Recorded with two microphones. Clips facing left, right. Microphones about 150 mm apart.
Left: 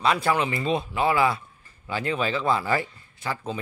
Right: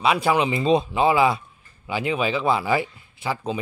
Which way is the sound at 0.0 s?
10° right (ahead or behind).